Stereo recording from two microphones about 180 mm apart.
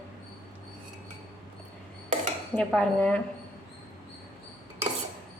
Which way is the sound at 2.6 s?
5° left (ahead or behind).